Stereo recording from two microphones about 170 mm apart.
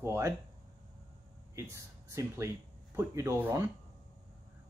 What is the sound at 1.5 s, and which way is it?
Speech, 15° right (ahead or behind).